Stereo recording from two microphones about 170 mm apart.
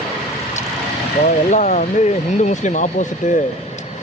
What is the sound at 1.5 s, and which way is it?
Speech, 45° left (ahead or behind).